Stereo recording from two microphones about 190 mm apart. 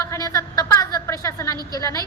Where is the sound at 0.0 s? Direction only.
15° left (ahead or behind).